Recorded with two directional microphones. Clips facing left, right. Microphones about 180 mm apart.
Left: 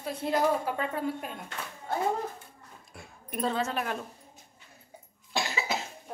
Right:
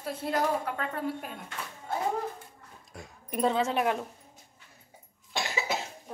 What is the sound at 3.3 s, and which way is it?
Speech, 20° right (ahead or behind).